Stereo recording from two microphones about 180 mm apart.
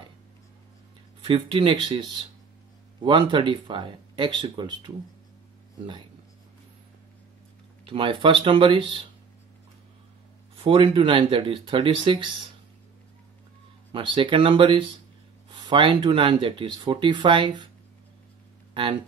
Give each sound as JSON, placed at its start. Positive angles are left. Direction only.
{"t": 1.2, "sound": "speech", "side_deg": -30}
{"t": 7.8, "sound": "speech", "side_deg": -30}
{"t": 10.5, "sound": "speech", "side_deg": -30}
{"t": 13.9, "sound": "speech", "side_deg": -30}